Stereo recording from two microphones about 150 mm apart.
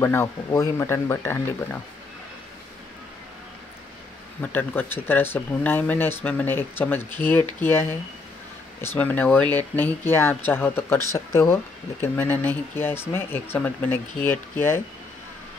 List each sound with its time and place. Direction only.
0.0 s speech: 15° left (ahead or behind)
4.4 s speech: 10° left (ahead or behind)